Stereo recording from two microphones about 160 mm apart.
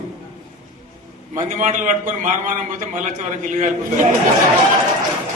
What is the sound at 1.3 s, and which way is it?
A man's voice, 55° right (ahead or behind).